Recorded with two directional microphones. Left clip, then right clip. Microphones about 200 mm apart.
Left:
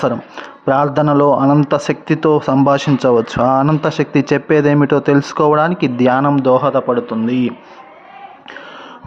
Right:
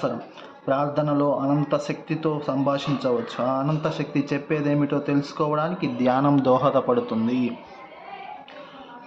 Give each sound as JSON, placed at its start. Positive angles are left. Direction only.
{"t": 0.0, "sound": "speech", "side_deg": 50}
{"t": 7.3, "sound": "speech", "side_deg": 45}